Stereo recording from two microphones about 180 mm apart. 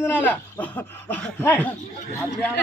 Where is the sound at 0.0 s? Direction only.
10° left (ahead or behind).